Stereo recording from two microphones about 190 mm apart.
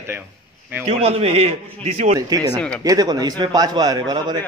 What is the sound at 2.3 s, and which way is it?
A man's voice, 20° right (ahead or behind).